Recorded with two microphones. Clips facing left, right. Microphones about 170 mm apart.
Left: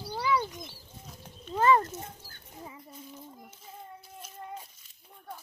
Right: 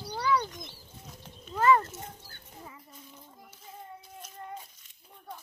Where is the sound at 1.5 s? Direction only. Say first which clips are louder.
Even; 25° left (ahead or behind).